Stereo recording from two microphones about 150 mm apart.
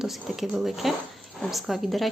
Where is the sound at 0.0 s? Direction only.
5° right (ahead or behind).